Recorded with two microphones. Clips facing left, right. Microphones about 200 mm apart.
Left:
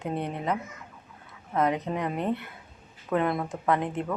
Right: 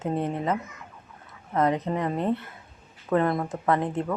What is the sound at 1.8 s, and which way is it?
Speech, centre (ahead or behind).